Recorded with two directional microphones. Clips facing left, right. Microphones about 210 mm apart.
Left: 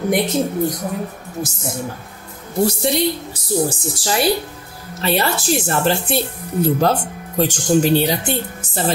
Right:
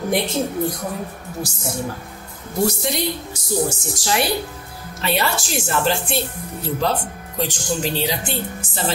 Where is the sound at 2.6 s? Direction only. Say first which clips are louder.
Left 4 dB; 30° left (ahead or behind).